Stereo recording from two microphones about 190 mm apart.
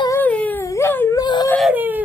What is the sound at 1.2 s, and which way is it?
Speech, 20° left (ahead or behind).